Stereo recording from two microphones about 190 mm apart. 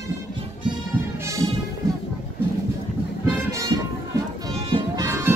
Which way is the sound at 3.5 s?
15° right (ahead or behind).